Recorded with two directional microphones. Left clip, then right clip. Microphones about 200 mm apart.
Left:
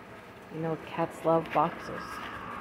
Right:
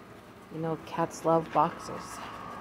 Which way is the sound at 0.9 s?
10° right (ahead or behind).